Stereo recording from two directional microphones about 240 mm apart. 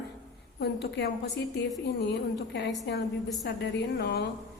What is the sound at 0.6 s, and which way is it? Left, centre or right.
A woman's voice, left.